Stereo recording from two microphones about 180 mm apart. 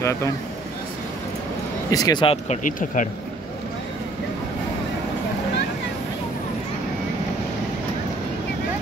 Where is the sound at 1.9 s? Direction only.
20° left (ahead or behind).